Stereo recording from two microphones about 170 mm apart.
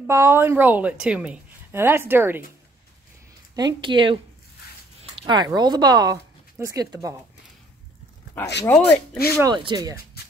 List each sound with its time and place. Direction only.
0.0 s a woman's voice: 15° right (ahead or behind)
3.5 s speech: 25° right (ahead or behind)
8.6 s speech: 10° left (ahead or behind)
9.4 s speech: 25° right (ahead or behind)